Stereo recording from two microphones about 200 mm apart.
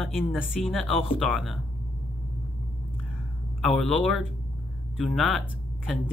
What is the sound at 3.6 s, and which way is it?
Speech, centre (ahead or behind).